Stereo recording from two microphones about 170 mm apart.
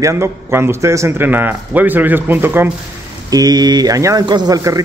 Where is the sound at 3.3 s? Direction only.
20° right (ahead or behind).